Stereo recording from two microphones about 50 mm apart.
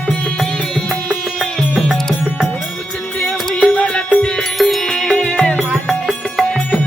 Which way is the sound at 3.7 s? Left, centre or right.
Left.